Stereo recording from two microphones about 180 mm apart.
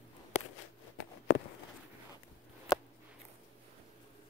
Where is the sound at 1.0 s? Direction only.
85° left.